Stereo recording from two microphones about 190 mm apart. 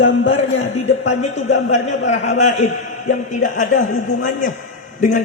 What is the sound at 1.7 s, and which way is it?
A man's voice, 35° left (ahead or behind).